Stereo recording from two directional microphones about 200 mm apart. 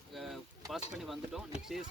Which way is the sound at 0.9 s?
Centre (ahead or behind).